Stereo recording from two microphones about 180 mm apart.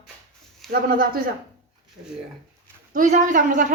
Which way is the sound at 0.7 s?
55° right (ahead or behind).